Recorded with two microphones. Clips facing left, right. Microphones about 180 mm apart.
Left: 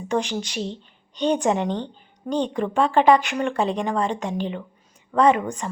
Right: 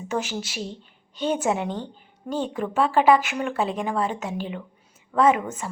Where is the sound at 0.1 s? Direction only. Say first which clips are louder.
Left 4 dB; 5° right (ahead or behind).